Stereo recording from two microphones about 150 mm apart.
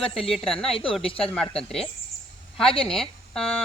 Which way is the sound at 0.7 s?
35° left (ahead or behind).